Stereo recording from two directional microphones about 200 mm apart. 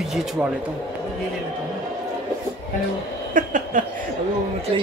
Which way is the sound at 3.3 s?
40° right (ahead or behind).